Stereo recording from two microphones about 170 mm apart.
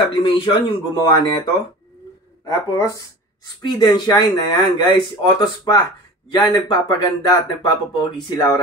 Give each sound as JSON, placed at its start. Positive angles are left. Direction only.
{"t": 0.1, "sound": "speech", "side_deg": 30}